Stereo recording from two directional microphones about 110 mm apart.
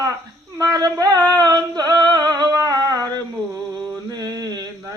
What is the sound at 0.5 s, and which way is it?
Singing, 35° right (ahead or behind).